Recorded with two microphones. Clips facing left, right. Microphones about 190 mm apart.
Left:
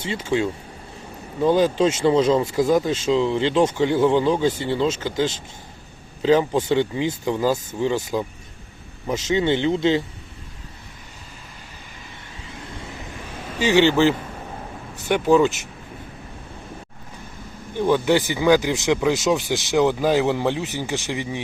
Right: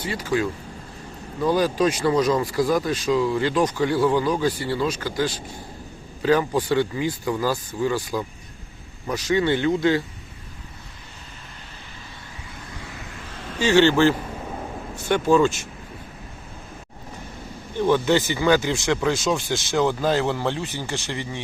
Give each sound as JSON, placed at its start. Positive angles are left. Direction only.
{"t": 0.0, "sound": "speech", "side_deg": 25}
{"t": 13.6, "sound": "speech", "side_deg": 15}
{"t": 17.7, "sound": "speech", "side_deg": 15}